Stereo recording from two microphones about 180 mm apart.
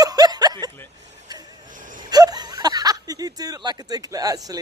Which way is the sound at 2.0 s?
20° right (ahead or behind).